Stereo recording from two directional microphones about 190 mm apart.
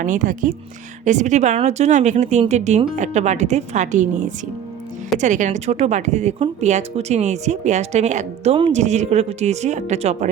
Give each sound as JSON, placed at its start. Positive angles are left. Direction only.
{"t": 0.0, "sound": "speech", "side_deg": -45}